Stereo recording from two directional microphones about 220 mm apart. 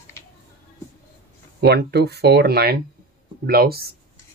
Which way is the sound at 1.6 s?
50° right (ahead or behind).